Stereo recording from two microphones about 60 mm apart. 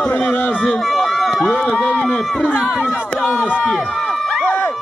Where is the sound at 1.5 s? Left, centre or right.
Centre.